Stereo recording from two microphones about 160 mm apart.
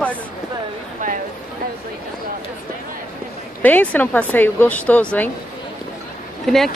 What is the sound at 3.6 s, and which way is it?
Speech, 10° left (ahead or behind).